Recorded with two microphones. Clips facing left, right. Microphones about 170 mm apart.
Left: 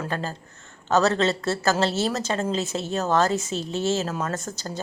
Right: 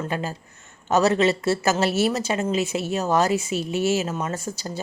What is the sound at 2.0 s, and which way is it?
A woman's voice, 5° right (ahead or behind).